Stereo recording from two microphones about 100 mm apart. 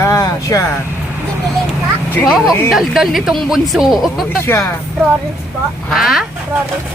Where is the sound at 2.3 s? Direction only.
5° right (ahead or behind).